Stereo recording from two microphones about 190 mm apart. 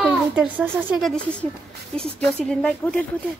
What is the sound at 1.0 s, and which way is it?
Speech, 5° left (ahead or behind).